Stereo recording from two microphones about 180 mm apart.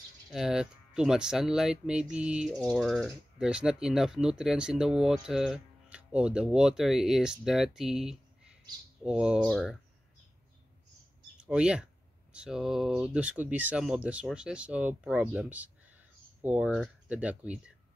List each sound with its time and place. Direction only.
0.3 s speech: 5° right (ahead or behind)
9.5 s speech: 5° left (ahead or behind)
11.3 s speech: 5° right (ahead or behind)